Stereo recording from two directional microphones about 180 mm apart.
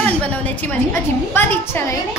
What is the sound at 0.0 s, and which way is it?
A woman's voice, 10° left (ahead or behind).